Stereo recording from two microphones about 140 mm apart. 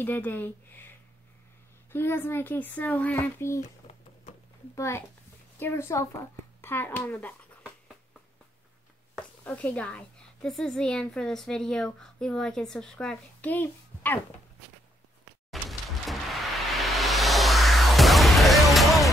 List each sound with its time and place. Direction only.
0.0 s a child's voice: 15° left (ahead or behind)
4.7 s a woman's voice: 20° left (ahead or behind)
9.4 s a woman's voice: 10° left (ahead or behind)
16.7 s music: centre (ahead or behind)